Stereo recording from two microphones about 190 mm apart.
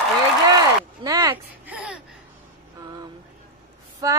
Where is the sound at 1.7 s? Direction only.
5° right (ahead or behind).